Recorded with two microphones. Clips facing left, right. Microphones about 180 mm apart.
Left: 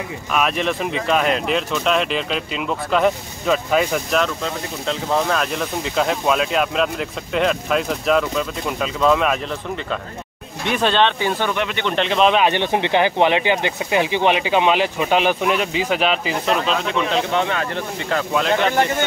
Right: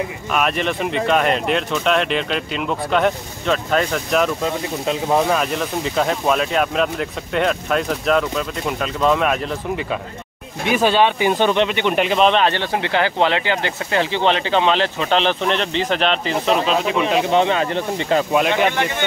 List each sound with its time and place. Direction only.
0.3 s speech: centre (ahead or behind)
4.2 s speech: 10° right (ahead or behind)
10.7 s speech: 5° right (ahead or behind)
12.4 s speech: 20° left (ahead or behind); by 17.0 s 5° right (ahead or behind)
17.1 s speech: 20° right (ahead or behind)